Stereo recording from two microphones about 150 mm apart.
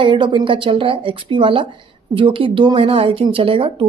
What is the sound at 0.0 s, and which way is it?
Speech, 35° right (ahead or behind).